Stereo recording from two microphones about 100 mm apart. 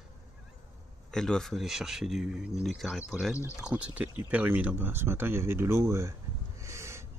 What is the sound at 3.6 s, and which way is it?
Speech, 15° right (ahead or behind).